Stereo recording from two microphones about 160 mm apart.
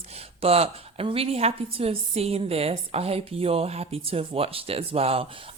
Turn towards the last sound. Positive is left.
turn(degrees=-35)  # may be behind; listen again after turning